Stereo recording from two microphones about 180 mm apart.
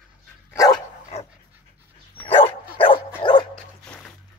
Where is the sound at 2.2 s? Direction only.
30° left (ahead or behind).